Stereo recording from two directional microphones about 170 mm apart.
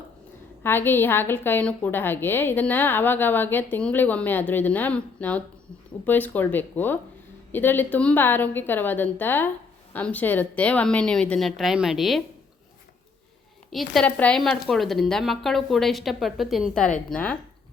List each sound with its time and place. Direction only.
0.6 s a woman's voice: 10° left (ahead or behind)
13.7 s a woman's voice: centre (ahead or behind)